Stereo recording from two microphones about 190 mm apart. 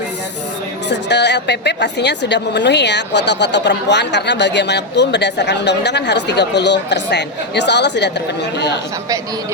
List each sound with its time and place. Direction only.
0.9 s a woman's voice: 65° left (ahead or behind)